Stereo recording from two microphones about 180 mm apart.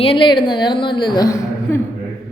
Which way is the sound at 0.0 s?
30° left (ahead or behind).